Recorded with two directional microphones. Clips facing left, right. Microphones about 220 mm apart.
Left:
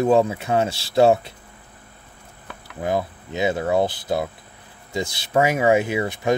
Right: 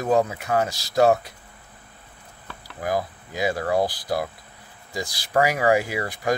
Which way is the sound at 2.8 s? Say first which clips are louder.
Left 2 dB; 25° left (ahead or behind).